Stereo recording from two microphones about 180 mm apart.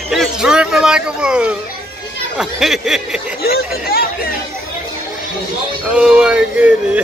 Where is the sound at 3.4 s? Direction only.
55° left (ahead or behind).